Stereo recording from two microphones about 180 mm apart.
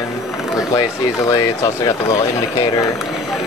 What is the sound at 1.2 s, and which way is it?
Speech, 20° left (ahead or behind).